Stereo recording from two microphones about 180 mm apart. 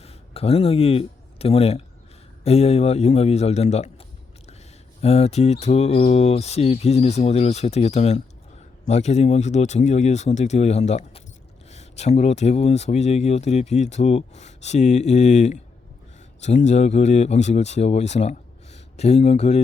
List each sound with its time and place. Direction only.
0.0 s speech: 35° left (ahead or behind)
5.0 s speech: 35° left (ahead or behind)